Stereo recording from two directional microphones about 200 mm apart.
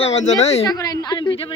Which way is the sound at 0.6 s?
15° left (ahead or behind).